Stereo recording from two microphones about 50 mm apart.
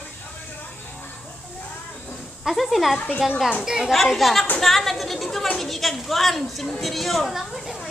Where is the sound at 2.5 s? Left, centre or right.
Centre.